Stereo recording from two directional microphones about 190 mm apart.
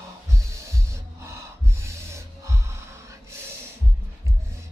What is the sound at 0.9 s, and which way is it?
Gasp, 15° right (ahead or behind).